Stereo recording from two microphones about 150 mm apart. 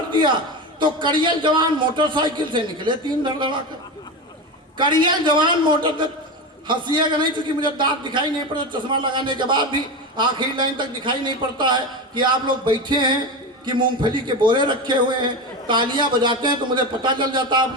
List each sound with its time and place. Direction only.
0.1 s a man's voice: 30° right (ahead or behind)
4.8 s a man's voice: 30° right (ahead or behind)